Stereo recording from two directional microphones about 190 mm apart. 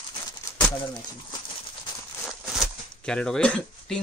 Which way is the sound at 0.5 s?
15° left (ahead or behind).